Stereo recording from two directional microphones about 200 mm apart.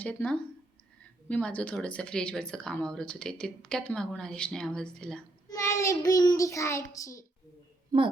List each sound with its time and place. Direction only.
0.0 s child singing: 5° left (ahead or behind)
1.3 s speech: 5° left (ahead or behind)
5.5 s child singing: 15° left (ahead or behind)
7.9 s a child's voice: 20° right (ahead or behind)